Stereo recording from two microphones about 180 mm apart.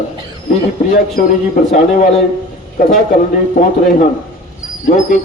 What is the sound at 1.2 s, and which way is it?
Speech, 45° left (ahead or behind).